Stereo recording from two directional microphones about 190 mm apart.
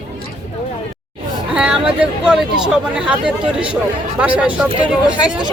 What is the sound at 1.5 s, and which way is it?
Speech, 5° right (ahead or behind).